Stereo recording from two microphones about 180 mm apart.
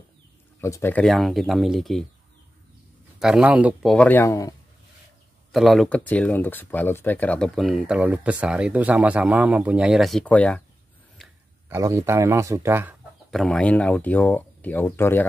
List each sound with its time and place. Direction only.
0.6 s speech: 15° left (ahead or behind)
3.2 s speech: 5° right (ahead or behind)
3.9 s speech: 10° left (ahead or behind)
5.5 s speech: centre (ahead or behind)
11.7 s speech: 15° right (ahead or behind)
13.3 s speech: 5° left (ahead or behind)